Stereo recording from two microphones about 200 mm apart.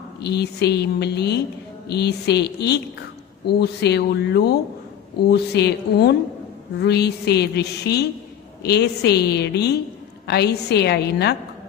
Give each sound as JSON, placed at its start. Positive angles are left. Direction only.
{"t": 0.2, "sound": "a woman's voice", "side_deg": 55}